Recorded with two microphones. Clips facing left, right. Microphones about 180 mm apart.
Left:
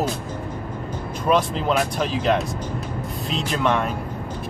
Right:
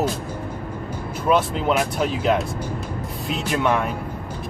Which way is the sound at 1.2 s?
5° right (ahead or behind).